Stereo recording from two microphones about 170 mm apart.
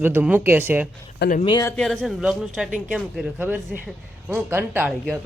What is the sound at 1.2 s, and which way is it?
Speech, 80° left.